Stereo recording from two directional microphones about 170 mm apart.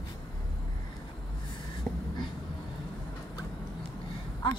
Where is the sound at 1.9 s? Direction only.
5° left (ahead or behind).